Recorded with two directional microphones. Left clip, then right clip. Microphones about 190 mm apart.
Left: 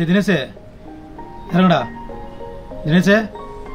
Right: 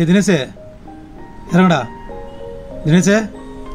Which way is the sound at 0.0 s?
20° right (ahead or behind).